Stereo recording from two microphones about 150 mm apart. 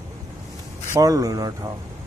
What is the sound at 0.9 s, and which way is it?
Speech, 25° right (ahead or behind).